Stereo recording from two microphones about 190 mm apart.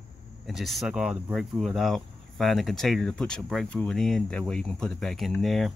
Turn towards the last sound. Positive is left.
turn(degrees=0)  # may be behind; listen again after turning